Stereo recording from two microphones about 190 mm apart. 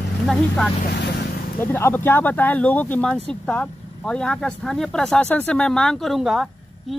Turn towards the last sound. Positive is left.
turn(degrees=0)  # may be behind; listen again after turning